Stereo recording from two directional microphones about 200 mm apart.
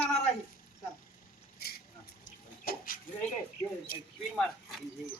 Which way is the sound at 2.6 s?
45° left (ahead or behind).